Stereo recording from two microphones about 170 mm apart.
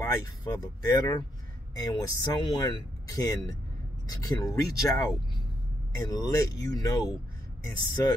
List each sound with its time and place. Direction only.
0.0 s speech: 20° left (ahead or behind)